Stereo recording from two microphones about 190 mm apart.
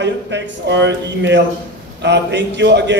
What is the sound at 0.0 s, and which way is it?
A man's voice, 65° right (ahead or behind).